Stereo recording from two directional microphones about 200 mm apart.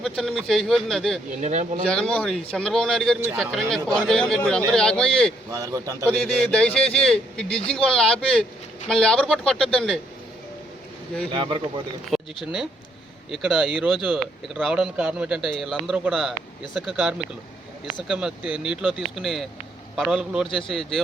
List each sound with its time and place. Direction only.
0.0 s speech: centre (ahead or behind)
1.4 s speech: 35° right (ahead or behind)
1.9 s speech: 5° left (ahead or behind)
5.5 s a man's voice: 15° right (ahead or behind)
6.1 s speech: 5° left (ahead or behind)
11.3 s speech: 25° right (ahead or behind)
12.1 s speech: centre (ahead or behind)